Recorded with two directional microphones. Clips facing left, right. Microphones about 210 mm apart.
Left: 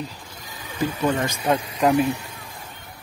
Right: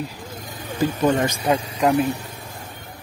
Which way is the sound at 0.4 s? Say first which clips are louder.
Right 3 dB; 55° right (ahead or behind).